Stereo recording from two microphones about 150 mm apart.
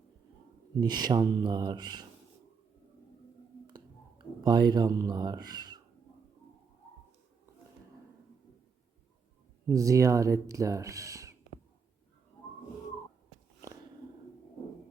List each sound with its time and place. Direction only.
0.8 s speech: 25° right (ahead or behind)
4.4 s speech: 30° right (ahead or behind)
9.6 s speech: 20° right (ahead or behind)